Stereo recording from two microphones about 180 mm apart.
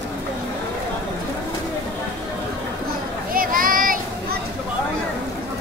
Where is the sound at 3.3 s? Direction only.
50° right (ahead or behind).